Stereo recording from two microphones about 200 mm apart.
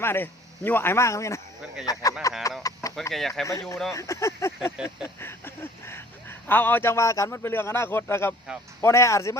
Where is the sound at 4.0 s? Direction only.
15° left (ahead or behind).